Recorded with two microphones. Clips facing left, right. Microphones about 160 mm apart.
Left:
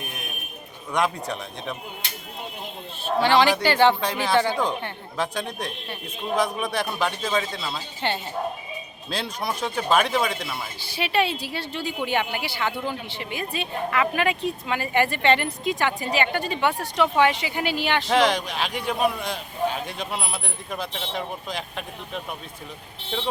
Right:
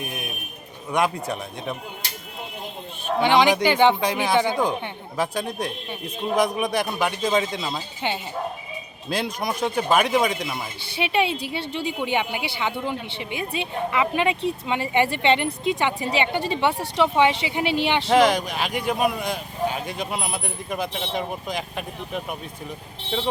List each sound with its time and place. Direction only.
0.9 s speech: 5° right (ahead or behind)
3.2 s speech: 15° right (ahead or behind)
18.1 s speech: 10° right (ahead or behind)